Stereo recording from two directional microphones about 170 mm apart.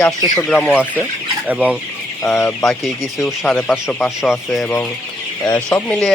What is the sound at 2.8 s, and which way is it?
Chicken, centre (ahead or behind).